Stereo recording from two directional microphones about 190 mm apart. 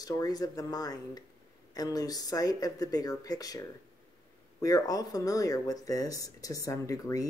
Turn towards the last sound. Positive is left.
turn(degrees=15)  # may be behind; listen again after turning